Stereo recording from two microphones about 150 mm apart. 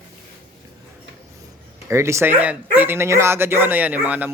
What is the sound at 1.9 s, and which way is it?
Speech, 20° right (ahead or behind).